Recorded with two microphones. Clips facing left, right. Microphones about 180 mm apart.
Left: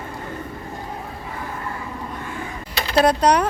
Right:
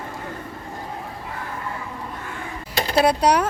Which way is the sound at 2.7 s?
45° right (ahead or behind).